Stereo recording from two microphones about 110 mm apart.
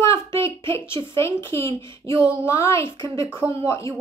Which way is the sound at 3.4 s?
10° right (ahead or behind).